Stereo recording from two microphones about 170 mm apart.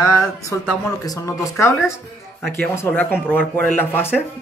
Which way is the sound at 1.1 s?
20° left (ahead or behind).